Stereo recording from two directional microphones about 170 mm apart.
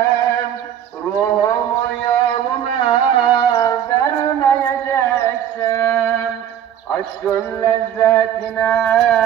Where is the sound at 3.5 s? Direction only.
20° left (ahead or behind).